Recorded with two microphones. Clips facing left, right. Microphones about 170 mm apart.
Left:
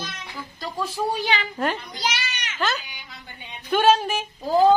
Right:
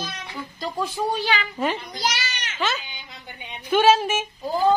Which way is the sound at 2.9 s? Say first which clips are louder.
Right 2 dB; 20° right (ahead or behind).